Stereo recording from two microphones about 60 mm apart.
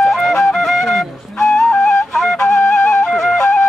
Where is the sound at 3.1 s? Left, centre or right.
Centre.